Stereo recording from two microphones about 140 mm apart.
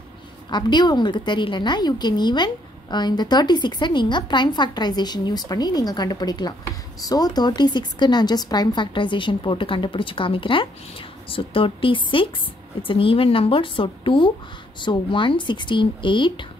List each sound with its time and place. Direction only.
0.5 s a woman's voice: 30° left (ahead or behind)